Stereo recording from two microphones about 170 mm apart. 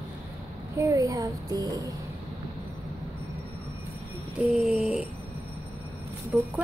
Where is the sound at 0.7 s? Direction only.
20° right (ahead or behind).